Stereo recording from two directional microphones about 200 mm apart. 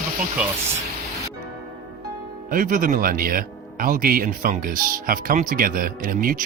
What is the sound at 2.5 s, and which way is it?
Speech, 45° right (ahead or behind).